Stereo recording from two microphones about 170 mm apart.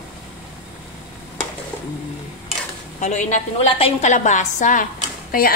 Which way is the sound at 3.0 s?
45° left (ahead or behind).